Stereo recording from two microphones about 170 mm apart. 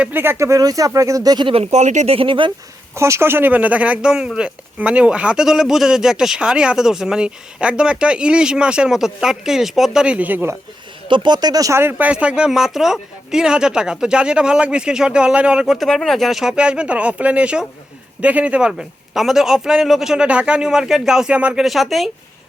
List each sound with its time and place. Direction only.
0.0 s speech: 10° right (ahead or behind); by 1.6 s 30° right (ahead or behind)
1.7 s speech: 45° right (ahead or behind)
2.9 s speech: 15° right (ahead or behind)
11.1 s speech: 25° right (ahead or behind); by 22.1 s centre (ahead or behind)